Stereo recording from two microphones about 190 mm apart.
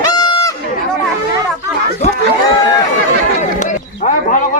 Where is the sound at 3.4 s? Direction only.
40° left (ahead or behind).